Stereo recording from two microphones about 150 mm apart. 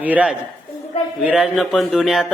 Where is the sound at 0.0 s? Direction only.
10° right (ahead or behind).